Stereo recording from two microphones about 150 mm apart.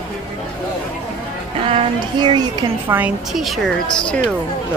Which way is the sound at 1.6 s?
35° right (ahead or behind).